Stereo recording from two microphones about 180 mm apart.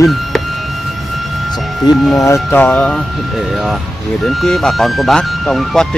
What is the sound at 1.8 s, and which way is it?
Speech, 20° left (ahead or behind).